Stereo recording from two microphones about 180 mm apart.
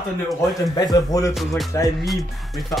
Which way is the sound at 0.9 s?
20° left (ahead or behind).